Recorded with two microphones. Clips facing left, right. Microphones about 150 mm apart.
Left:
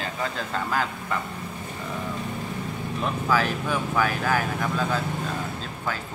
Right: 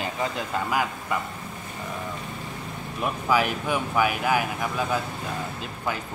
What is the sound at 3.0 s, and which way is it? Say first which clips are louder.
Speech: right 1 dB; 15° right (ahead or behind).